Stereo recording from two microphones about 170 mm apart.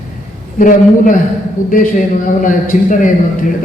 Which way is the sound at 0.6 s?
50° left (ahead or behind).